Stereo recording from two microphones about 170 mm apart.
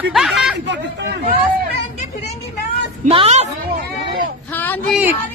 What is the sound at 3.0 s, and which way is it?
Speech, 40° right (ahead or behind).